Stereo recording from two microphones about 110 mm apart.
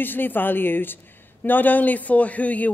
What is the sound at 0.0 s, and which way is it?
Speech, 20° left (ahead or behind).